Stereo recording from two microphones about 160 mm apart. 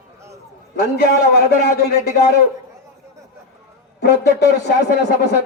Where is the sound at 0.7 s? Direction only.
80° left.